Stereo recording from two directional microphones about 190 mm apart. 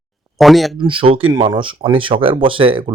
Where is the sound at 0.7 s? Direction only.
25° right (ahead or behind).